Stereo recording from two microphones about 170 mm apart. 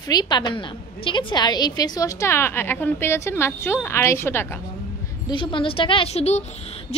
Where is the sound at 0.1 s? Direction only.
25° left (ahead or behind).